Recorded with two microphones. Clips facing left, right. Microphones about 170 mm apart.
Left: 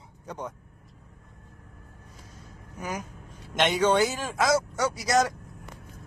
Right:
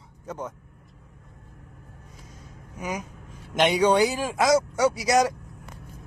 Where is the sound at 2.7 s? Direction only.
10° right (ahead or behind).